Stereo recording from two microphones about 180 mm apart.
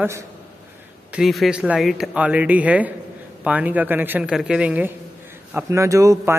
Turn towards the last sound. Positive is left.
turn(degrees=-15)  # may be behind; listen again after turning